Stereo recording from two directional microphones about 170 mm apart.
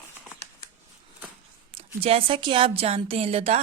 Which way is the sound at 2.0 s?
35° right (ahead or behind).